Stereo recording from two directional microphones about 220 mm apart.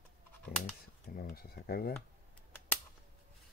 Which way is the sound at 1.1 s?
40° left (ahead or behind).